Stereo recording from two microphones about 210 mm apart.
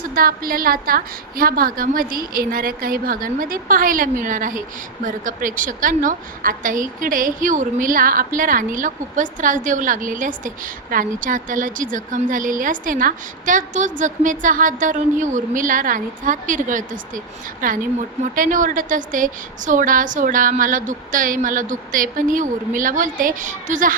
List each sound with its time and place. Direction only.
0.1 s a woman's voice: 45° right (ahead or behind)